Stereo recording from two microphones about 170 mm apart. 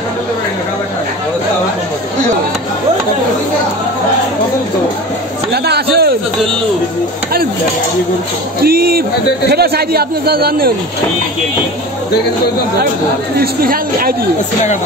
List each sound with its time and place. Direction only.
5.5 s a sound: 70° right (ahead or behind)
8.6 s a woman's voice: 60° right (ahead or behind)
13.4 s a woman's voice: 60° right (ahead or behind)